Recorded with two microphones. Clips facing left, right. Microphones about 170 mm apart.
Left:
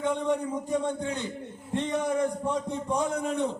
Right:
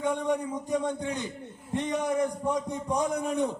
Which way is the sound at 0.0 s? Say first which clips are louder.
Left 1 dB; 15° right (ahead or behind).